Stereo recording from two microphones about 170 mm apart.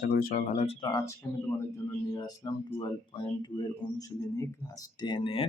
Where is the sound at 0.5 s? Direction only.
35° left (ahead or behind); by 1.1 s 20° left (ahead or behind).